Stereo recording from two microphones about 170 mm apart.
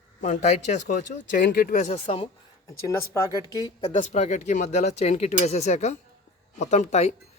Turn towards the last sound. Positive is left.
turn(degrees=40)  # may be behind; listen again after turning